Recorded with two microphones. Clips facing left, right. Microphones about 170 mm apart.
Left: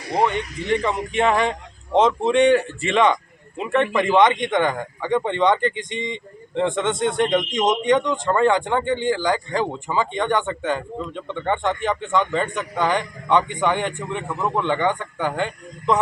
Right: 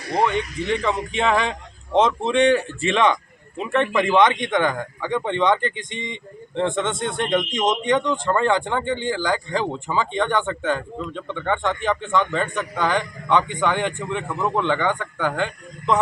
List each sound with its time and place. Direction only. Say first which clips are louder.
0.1 s a man's voice: even; 15° left (ahead or behind)
3.6 s a man's voice: left 1 dB; 15° left (ahead or behind)